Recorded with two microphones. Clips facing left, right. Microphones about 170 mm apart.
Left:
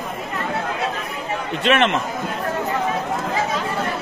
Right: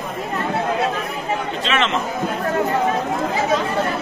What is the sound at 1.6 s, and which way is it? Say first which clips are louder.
Speech: left 5 dB; 55° left (ahead or behind).